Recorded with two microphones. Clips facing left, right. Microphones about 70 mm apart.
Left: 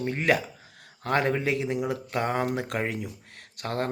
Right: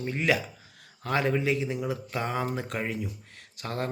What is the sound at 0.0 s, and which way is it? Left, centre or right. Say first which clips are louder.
Speech: left 2 dB; left.